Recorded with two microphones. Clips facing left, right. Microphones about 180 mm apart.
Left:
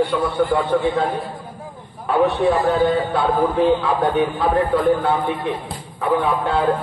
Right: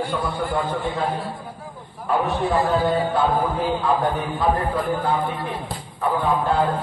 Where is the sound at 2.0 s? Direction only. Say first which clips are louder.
Left 5 dB; 65° left (ahead or behind).